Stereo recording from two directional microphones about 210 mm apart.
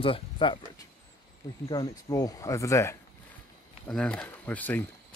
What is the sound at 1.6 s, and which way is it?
Speech, 20° left (ahead or behind).